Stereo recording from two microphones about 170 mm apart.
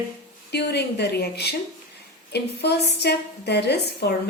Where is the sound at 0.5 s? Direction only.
75° left (ahead or behind).